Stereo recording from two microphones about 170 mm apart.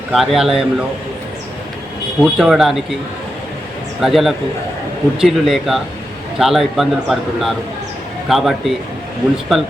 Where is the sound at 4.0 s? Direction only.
Centre (ahead or behind).